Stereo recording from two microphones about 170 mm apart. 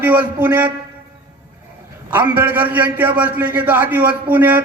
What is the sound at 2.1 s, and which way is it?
A man's voice, 10° right (ahead or behind).